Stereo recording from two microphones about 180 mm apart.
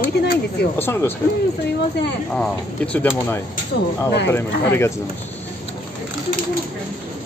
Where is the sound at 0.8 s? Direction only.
15° left (ahead or behind).